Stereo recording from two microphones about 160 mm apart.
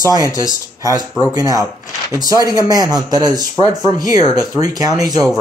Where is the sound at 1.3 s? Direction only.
25° right (ahead or behind).